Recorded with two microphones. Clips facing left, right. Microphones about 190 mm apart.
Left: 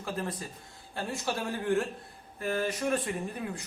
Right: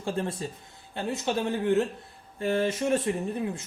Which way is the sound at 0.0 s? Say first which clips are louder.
Right 5 dB; 30° right (ahead or behind).